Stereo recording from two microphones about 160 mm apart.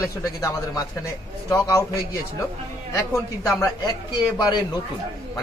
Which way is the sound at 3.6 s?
25° left (ahead or behind).